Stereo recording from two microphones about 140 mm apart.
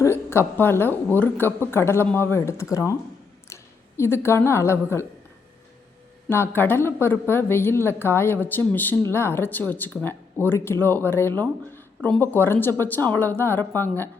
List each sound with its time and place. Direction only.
0.0 s a woman's voice: 20° left (ahead or behind)
6.2 s a woman's voice: 15° left (ahead or behind)